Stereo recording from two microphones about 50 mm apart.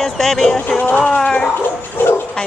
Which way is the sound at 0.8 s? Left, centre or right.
Left.